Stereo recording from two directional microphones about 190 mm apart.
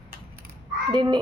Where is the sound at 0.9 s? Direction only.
25° right (ahead or behind).